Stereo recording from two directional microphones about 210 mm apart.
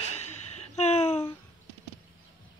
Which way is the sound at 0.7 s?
30° left (ahead or behind).